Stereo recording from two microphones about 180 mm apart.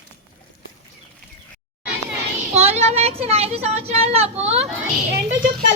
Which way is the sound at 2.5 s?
35° right (ahead or behind).